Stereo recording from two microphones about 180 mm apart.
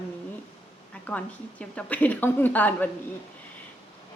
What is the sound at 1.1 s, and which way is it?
A woman's voice, 5° left (ahead or behind).